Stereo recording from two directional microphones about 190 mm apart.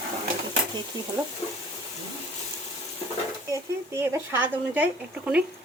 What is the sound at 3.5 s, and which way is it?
Speech, 15° right (ahead or behind).